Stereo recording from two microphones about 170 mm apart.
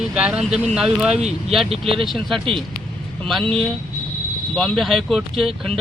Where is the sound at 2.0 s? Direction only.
Centre (ahead or behind).